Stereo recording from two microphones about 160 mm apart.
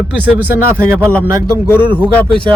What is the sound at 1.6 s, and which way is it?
Speech, 15° left (ahead or behind).